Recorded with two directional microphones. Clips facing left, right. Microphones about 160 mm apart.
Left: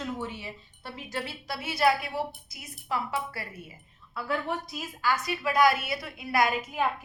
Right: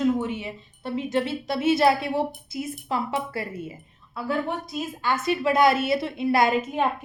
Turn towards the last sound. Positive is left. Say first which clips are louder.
# right 5 dB
turn(degrees=-25)  # may be behind; listen again after turning